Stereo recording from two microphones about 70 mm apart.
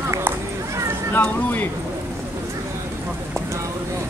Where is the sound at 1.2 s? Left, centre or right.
Left.